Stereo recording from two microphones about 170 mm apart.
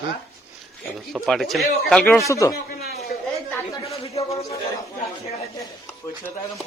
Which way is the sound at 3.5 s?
15° left (ahead or behind).